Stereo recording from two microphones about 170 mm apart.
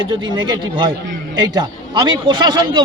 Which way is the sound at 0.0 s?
25° right (ahead or behind).